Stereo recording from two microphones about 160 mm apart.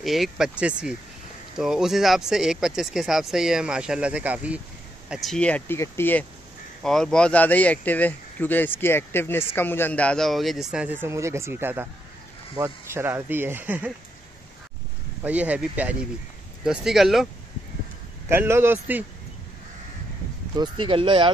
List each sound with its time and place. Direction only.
0.0 s speech: centre (ahead or behind)
5.1 s speech: centre (ahead or behind)
6.8 s speech: 5° left (ahead or behind)
15.2 s speech: 10° right (ahead or behind)
18.3 s speech: 15° right (ahead or behind)
20.5 s speech: 30° right (ahead or behind)